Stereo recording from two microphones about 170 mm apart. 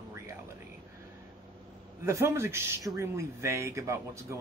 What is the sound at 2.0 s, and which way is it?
Speech, 15° right (ahead or behind).